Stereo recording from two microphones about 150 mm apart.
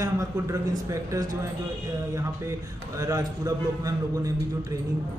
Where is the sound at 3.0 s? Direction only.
25° right (ahead or behind).